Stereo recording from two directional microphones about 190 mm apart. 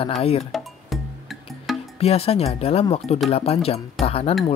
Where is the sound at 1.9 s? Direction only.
30° left (ahead or behind).